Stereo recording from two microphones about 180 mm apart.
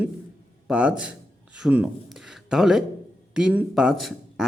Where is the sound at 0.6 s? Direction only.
5° right (ahead or behind).